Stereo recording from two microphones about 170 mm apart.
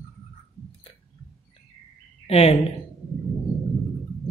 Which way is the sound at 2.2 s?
40° left (ahead or behind).